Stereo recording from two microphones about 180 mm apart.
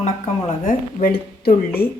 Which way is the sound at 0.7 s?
55° left (ahead or behind).